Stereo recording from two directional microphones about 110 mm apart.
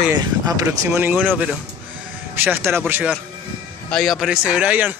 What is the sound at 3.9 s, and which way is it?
A man's voice, centre (ahead or behind).